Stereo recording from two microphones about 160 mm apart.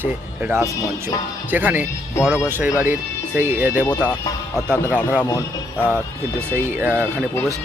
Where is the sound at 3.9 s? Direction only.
10° left (ahead or behind).